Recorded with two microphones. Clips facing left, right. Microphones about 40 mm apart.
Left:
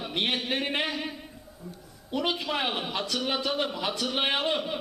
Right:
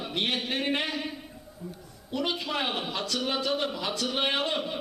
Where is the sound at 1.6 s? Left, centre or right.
Centre.